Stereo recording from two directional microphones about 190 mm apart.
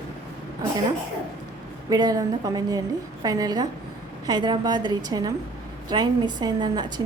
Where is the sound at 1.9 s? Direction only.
20° right (ahead or behind).